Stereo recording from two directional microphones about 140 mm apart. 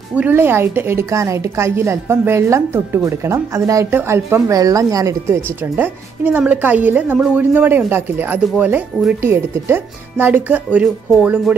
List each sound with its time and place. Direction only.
0.1 s a woman's voice: 15° right (ahead or behind)
5.8 s a woman's voice: 15° right (ahead or behind)